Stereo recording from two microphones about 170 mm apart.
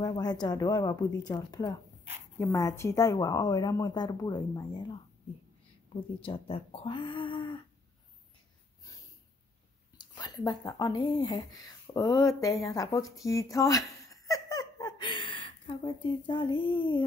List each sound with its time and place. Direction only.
0.0 s a woman's voice: 25° left (ahead or behind)
6.2 s speech: 35° left (ahead or behind)
9.9 s speech: 25° left (ahead or behind)